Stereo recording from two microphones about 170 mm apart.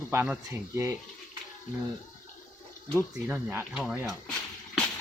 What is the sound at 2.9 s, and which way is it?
Speech, 10° right (ahead or behind).